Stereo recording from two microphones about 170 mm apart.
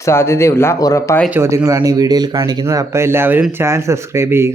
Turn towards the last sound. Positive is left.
turn(degrees=-15)  # may be behind; listen again after turning